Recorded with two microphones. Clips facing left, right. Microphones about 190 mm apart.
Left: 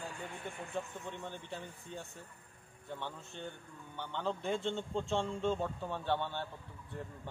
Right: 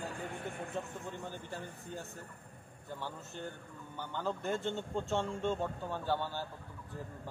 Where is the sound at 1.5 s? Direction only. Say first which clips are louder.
Right 1 dB; centre (ahead or behind).